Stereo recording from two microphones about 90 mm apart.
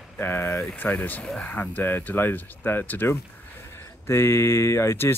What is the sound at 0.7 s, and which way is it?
Speech, 15° left (ahead or behind).